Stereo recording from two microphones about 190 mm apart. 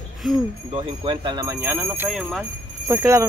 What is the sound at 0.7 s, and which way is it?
Speech, 30° right (ahead or behind).